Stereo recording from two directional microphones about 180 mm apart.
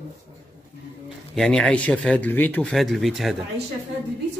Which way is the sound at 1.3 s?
5° left (ahead or behind).